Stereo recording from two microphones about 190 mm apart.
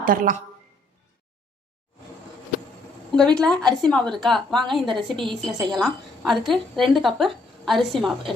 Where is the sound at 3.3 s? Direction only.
5° left (ahead or behind).